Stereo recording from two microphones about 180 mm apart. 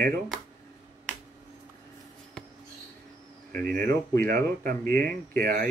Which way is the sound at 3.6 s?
55° right (ahead or behind).